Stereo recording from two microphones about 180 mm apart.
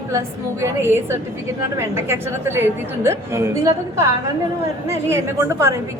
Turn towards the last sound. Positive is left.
turn(degrees=-15)  # may be behind; listen again after turning